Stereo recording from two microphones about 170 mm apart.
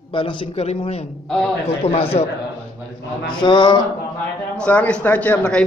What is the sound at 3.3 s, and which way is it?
Speech, 25° left (ahead or behind).